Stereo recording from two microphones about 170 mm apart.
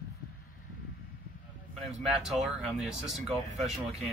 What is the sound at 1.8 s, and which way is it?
Speech, centre (ahead or behind).